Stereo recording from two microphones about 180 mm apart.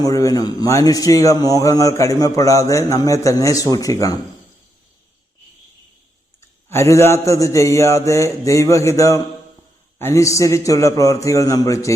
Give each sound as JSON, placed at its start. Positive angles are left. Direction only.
{"t": 0.0, "sound": "a man's voice", "side_deg": 20}
{"t": 6.7, "sound": "speech", "side_deg": 15}